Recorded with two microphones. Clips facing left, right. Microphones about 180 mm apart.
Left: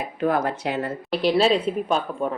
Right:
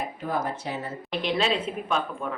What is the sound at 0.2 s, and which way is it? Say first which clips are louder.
Speech: left 10 dB; 75° left (ahead or behind).